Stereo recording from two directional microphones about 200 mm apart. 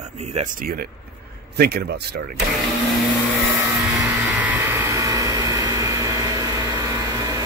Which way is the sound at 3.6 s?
10° right (ahead or behind).